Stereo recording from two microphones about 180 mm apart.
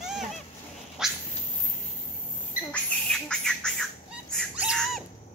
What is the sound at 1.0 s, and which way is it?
Cat, 5° right (ahead or behind).